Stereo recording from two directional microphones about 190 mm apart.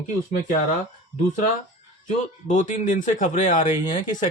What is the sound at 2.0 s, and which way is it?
Speech, 40° left (ahead or behind).